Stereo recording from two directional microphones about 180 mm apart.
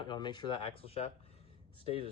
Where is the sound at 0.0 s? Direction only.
25° left (ahead or behind).